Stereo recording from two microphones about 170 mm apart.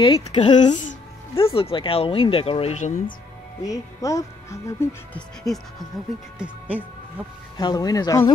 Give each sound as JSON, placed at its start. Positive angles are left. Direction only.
{"t": 0.0, "sound": "speech", "side_deg": 35}
{"t": 0.5, "sound": "speech", "side_deg": 25}
{"t": 3.6, "sound": "speech", "side_deg": 20}
{"t": 6.3, "sound": "speech", "side_deg": -5}
{"t": 7.5, "sound": "speech", "side_deg": 20}